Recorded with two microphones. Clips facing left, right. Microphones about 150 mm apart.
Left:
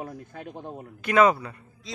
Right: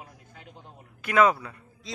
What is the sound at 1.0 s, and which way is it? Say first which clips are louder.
Speech: left 2 dB; centre (ahead or behind).